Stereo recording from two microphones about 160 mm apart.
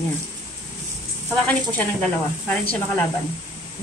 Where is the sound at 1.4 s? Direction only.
10° left (ahead or behind).